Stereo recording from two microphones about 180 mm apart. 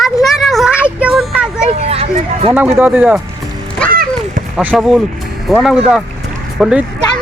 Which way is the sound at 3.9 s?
55° right (ahead or behind).